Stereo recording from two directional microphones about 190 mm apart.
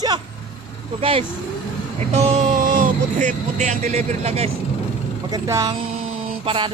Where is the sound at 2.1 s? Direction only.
35° right (ahead or behind).